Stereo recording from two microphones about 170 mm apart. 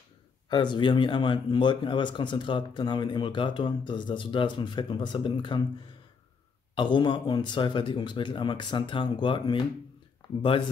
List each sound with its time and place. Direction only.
0.5 s speech: 30° left (ahead or behind)
6.7 s speech: 30° left (ahead or behind)